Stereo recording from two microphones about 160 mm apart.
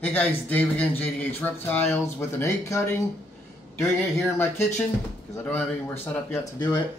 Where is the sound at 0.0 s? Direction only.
10° left (ahead or behind).